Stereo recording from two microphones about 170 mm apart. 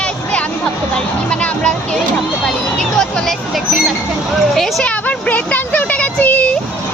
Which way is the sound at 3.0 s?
5° left (ahead or behind).